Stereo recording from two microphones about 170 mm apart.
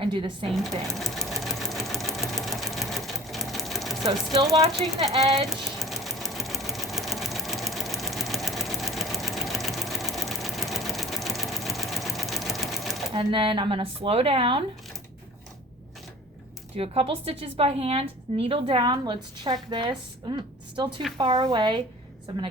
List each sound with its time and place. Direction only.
0.0 s a woman's voice: 30° right (ahead or behind)
0.9 s sewing machine: centre (ahead or behind)
4.8 s speech: centre (ahead or behind)
5.1 s a woman's voice: 35° right (ahead or behind)
5.5 s sewing machine: centre (ahead or behind)
13.1 s a woman's voice: 30° right (ahead or behind)
16.7 s a woman's voice: 35° right (ahead or behind)